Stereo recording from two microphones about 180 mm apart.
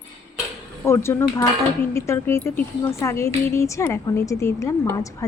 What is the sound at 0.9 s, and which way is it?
A woman's voice, 15° left (ahead or behind).